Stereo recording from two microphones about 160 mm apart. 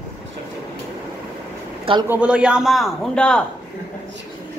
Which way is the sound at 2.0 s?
10° right (ahead or behind).